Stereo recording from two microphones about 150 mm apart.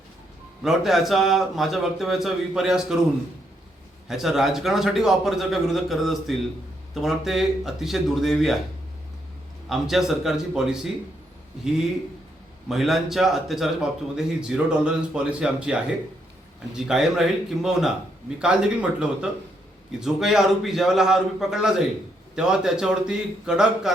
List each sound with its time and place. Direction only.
0.6 s a man's voice: centre (ahead or behind)
4.1 s a man's voice: centre (ahead or behind)
9.6 s a man's voice: centre (ahead or behind)
12.6 s a man's voice: centre (ahead or behind)